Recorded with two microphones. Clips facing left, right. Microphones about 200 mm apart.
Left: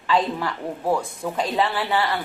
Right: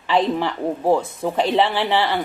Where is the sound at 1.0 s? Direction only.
25° right (ahead or behind).